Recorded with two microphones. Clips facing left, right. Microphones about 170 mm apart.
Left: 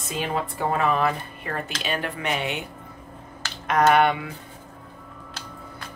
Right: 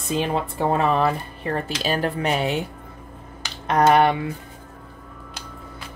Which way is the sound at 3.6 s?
35° right (ahead or behind).